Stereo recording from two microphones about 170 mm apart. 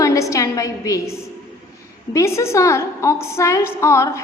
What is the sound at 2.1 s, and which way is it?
A woman's voice, 15° left (ahead or behind).